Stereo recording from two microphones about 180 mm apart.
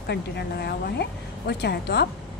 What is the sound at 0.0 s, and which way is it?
Speech, 65° left (ahead or behind).